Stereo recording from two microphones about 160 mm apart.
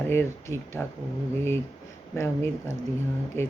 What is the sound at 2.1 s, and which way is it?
Speech, 15° left (ahead or behind).